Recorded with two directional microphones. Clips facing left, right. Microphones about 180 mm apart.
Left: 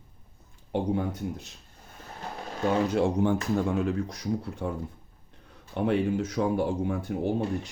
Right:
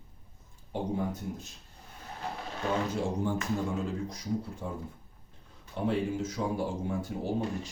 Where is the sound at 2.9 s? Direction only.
70° left (ahead or behind).